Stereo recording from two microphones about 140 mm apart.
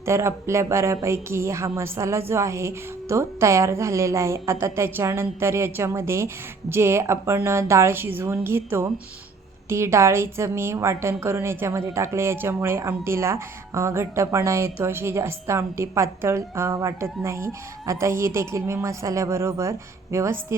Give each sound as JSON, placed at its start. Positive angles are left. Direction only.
{"t": 0.0, "sound": "a woman's voice", "side_deg": -20}